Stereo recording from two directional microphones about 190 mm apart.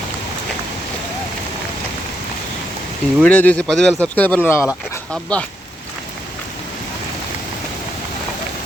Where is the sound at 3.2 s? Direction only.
10° left (ahead or behind).